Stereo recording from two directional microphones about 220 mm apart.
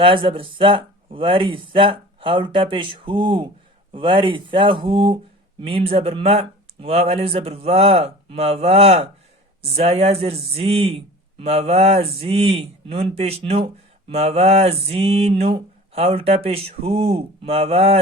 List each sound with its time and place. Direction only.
0.0 s speech: 25° right (ahead or behind)